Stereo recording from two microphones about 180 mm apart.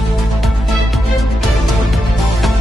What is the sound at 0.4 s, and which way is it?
Music, centre (ahead or behind).